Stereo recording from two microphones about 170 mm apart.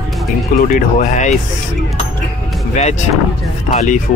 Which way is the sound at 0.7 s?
50° left (ahead or behind).